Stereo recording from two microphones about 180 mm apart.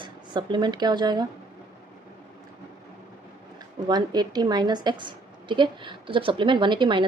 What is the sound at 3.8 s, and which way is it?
A woman's voice, 20° right (ahead or behind).